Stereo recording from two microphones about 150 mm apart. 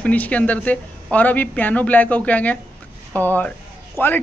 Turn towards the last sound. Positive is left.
turn(degrees=15)  # may be behind; listen again after turning